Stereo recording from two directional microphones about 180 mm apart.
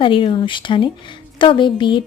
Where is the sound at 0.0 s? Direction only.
30° left (ahead or behind).